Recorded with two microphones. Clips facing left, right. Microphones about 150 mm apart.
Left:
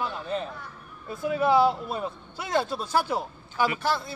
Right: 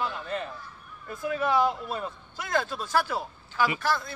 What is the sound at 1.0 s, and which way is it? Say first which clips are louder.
A man's voice: left 4 dB; 10° left (ahead or behind).